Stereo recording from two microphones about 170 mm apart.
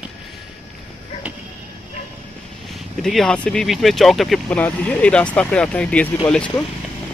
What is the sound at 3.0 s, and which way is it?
Speech, centre (ahead or behind).